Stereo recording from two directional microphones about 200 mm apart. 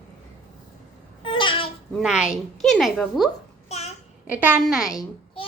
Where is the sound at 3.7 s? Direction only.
35° left (ahead or behind).